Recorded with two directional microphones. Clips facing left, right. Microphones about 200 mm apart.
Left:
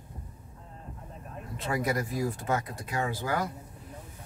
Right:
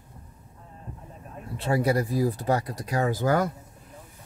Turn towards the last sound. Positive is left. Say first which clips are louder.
# right 7 dB
turn(degrees=-45)  # may be behind; listen again after turning